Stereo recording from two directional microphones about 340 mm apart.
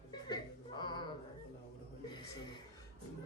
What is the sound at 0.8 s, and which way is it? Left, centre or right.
Music, centre.